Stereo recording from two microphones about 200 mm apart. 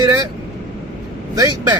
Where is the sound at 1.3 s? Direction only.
15° right (ahead or behind).